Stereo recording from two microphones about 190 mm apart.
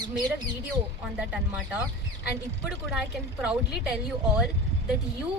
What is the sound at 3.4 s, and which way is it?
Speech, 5° right (ahead or behind).